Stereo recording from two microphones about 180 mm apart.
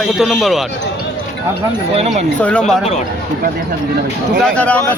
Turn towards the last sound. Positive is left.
turn(degrees=5)  # may be behind; listen again after turning